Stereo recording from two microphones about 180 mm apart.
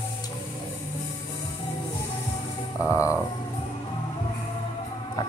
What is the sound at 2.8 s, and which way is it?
Speech, 15° left (ahead or behind).